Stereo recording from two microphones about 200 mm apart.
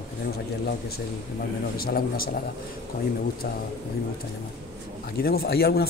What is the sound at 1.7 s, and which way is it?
Speech, 50° left (ahead or behind).